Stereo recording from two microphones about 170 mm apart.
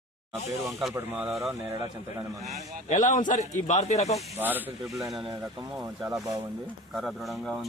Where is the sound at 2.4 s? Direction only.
40° right (ahead or behind).